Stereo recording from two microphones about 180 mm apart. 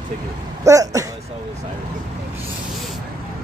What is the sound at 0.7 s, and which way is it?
Speech, 15° right (ahead or behind).